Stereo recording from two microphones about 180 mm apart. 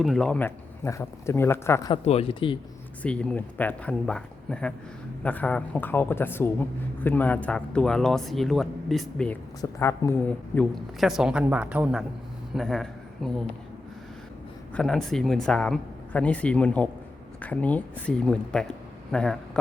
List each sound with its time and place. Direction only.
0.0 s speech: centre (ahead or behind)
1.9 s speech: 35° left (ahead or behind)
3.0 s a woman's voice: 5° left (ahead or behind)
9.6 s a woman's voice: 15° left (ahead or behind)
14.8 s a woman's voice: centre (ahead or behind)